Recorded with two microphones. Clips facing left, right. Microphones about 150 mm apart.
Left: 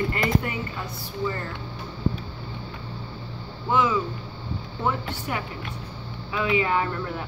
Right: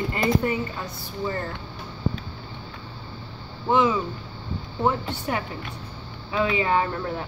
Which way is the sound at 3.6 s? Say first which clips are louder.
Right 2 dB; 30° right (ahead or behind).